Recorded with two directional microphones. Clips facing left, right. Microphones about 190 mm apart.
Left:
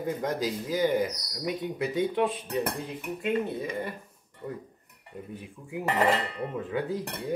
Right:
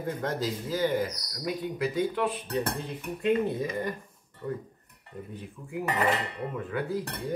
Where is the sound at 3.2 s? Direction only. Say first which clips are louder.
Right 3 dB; centre (ahead or behind).